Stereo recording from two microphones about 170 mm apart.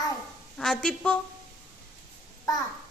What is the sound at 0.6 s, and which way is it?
Speech, 5° left (ahead or behind).